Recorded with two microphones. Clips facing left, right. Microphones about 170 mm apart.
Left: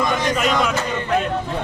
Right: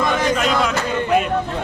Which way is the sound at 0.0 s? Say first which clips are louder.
Right 1 dB; centre (ahead or behind).